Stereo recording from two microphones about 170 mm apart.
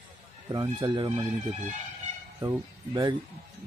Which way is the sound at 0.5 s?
20° right (ahead or behind).